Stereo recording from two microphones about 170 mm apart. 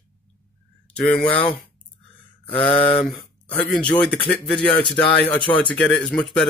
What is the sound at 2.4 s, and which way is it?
Mantra, 30° left (ahead or behind).